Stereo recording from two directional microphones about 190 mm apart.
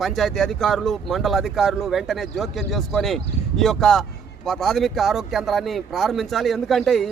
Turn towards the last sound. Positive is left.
turn(degrees=0)  # may be behind; listen again after turning